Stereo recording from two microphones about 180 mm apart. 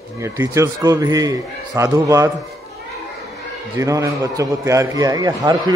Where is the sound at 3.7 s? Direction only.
15° right (ahead or behind).